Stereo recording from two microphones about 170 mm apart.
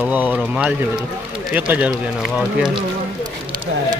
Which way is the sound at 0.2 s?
Centre (ahead or behind).